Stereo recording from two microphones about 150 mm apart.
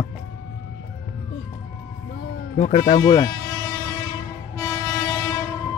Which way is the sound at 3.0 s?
20° left (ahead or behind).